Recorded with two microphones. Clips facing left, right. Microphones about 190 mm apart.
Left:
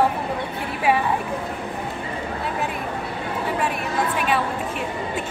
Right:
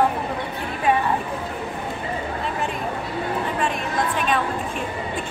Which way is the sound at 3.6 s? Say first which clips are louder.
Even; 10° left (ahead or behind).